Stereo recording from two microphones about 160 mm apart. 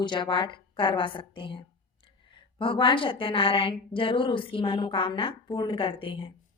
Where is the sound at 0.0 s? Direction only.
30° left (ahead or behind).